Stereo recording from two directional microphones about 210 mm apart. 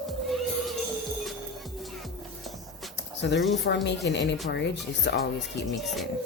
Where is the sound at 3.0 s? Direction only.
55° left (ahead or behind).